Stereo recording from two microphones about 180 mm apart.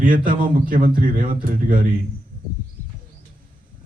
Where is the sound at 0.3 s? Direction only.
50° right (ahead or behind).